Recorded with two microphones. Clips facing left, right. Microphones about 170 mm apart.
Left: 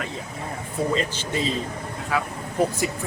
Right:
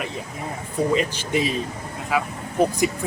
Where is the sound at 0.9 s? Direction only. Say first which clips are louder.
Right 3 dB; 15° right (ahead or behind).